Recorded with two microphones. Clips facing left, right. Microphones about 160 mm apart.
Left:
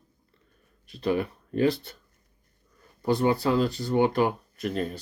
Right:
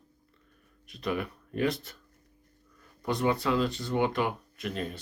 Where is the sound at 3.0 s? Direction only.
30° left (ahead or behind).